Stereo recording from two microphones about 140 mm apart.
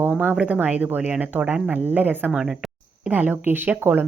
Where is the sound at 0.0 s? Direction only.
10° right (ahead or behind).